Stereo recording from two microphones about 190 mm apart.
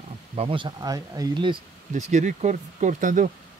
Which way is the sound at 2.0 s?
40° right (ahead or behind).